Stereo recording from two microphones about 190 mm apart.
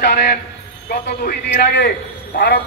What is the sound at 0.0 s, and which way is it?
Speech, 60° left (ahead or behind).